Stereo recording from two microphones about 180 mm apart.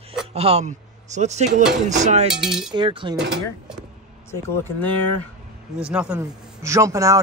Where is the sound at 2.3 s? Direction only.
5° right (ahead or behind).